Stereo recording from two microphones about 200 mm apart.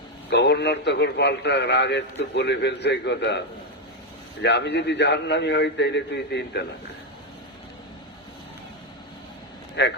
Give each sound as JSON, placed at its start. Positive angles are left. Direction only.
{"t": 0.3, "sound": "a man's voice", "side_deg": 60}
{"t": 9.8, "sound": "a man's voice", "side_deg": 60}